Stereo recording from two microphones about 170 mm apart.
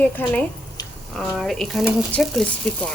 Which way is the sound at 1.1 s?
Centre (ahead or behind).